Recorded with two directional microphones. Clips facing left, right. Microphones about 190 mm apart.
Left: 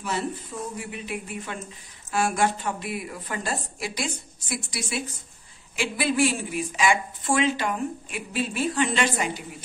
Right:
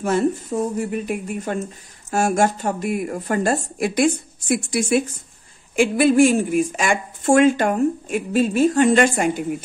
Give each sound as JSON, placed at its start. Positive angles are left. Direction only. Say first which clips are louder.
{"t": 0.0, "sound": "speech", "louder": "right 10 dB", "side_deg": -45}